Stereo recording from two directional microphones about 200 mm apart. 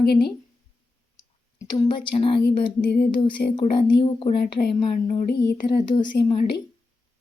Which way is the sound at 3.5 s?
25° left (ahead or behind).